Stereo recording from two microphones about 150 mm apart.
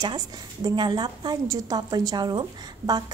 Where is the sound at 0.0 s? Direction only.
30° right (ahead or behind).